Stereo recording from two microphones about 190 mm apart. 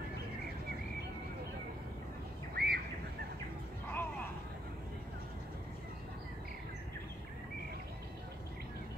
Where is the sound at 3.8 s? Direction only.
10° left (ahead or behind).